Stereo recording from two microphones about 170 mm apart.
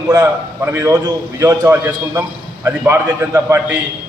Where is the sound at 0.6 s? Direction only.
15° right (ahead or behind).